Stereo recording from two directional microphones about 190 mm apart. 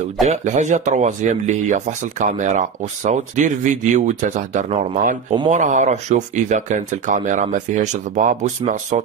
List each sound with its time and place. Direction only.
0.3 s speech: 40° right (ahead or behind)